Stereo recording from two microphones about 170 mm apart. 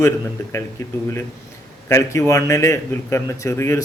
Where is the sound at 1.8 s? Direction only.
15° left (ahead or behind).